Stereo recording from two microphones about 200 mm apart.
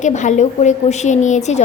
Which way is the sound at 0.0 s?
35° left (ahead or behind).